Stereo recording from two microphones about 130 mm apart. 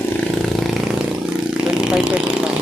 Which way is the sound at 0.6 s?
Centre (ahead or behind).